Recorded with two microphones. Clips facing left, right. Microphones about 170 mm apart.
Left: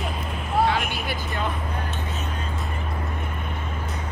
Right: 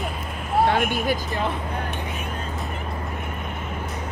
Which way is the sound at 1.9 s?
15° right (ahead or behind).